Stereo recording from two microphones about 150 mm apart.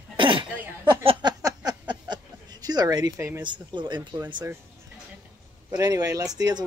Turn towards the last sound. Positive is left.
turn(degrees=-25)  # may be behind; listen again after turning